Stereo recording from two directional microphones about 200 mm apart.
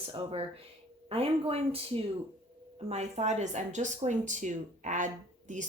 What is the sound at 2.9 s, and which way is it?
Speech, 35° right (ahead or behind).